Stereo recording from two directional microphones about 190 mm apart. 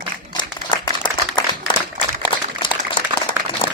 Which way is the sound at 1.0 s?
25° left (ahead or behind).